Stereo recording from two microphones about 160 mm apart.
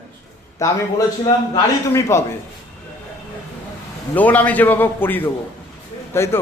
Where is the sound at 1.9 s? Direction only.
15° left (ahead or behind).